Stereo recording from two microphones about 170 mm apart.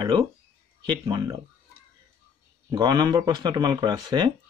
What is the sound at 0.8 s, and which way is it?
Speech, 25° right (ahead or behind).